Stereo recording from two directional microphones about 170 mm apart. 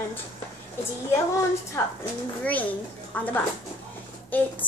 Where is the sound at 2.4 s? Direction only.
10° left (ahead or behind).